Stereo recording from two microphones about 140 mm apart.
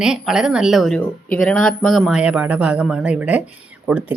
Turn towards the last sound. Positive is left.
turn(degrees=-5)  # may be behind; listen again after turning